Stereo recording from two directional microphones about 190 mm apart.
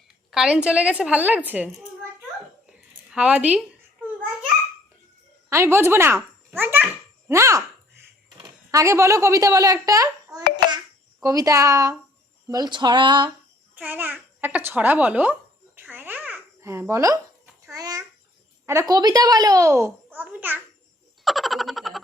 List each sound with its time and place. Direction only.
0.3 s a child's voice: 5° right (ahead or behind)
3.1 s speech: 5° right (ahead or behind)
5.5 s a child's voice: 15° right (ahead or behind)
13.7 s babbling: 10° right (ahead or behind)
18.6 s a child's voice: 15° right (ahead or behind)
21.2 s a sound: centre (ahead or behind)